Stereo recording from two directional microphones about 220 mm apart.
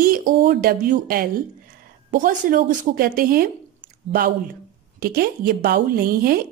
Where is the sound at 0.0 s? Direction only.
40° right (ahead or behind).